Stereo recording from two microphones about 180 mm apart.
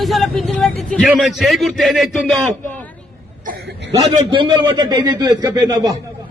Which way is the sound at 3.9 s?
25° right (ahead or behind).